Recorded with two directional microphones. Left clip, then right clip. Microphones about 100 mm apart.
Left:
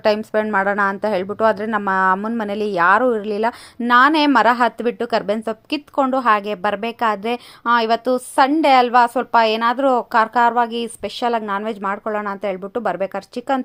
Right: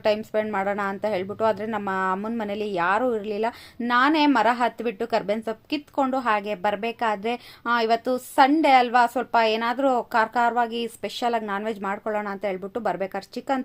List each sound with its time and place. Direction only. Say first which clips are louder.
0.0 s a woman's voice: left 5 dB; 45° left (ahead or behind)